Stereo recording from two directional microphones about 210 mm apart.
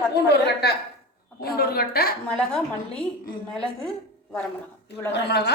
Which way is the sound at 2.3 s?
5° left (ahead or behind).